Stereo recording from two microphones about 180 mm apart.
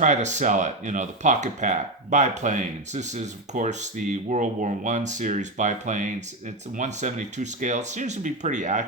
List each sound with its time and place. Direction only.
0.0 s speech: 40° right (ahead or behind)